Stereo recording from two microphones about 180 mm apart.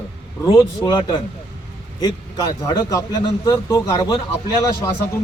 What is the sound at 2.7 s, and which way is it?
A man's voice, 20° left (ahead or behind).